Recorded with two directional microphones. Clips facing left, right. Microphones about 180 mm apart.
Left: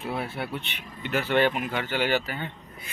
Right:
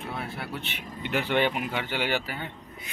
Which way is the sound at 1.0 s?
15° right (ahead or behind).